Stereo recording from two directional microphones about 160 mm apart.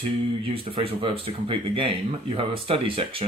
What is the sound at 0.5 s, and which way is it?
Speech, 35° right (ahead or behind).